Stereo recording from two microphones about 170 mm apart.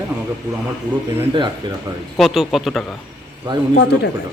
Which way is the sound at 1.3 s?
25° right (ahead or behind).